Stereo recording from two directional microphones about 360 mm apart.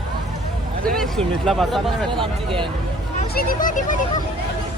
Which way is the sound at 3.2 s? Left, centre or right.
Left.